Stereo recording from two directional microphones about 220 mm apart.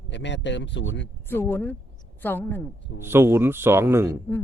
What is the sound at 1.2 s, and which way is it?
Speech, 10° left (ahead or behind).